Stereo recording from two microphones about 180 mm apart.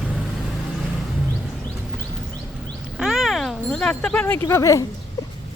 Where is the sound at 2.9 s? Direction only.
Centre (ahead or behind); by 4.9 s 15° left (ahead or behind).